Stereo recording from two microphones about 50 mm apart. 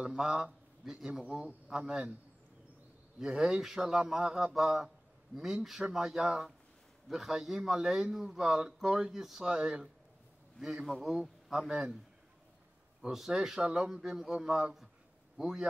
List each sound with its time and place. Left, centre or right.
0.0 s speech: centre
3.2 s a man's voice: centre
9.6 s a man's voice: centre
10.6 s a man's voice: centre
13.1 s a man's voice: centre